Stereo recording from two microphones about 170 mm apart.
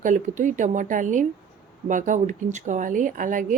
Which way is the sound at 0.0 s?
45° right (ahead or behind).